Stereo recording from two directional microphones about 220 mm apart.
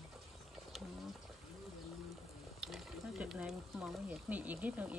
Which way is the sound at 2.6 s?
Centre (ahead or behind).